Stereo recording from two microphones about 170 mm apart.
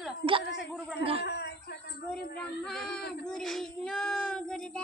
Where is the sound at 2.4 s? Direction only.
5° left (ahead or behind).